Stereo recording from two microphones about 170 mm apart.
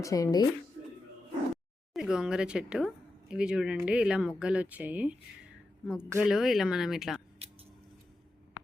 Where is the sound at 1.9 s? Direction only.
5° right (ahead or behind).